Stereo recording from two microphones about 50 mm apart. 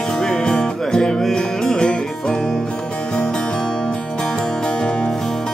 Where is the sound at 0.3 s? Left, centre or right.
Centre.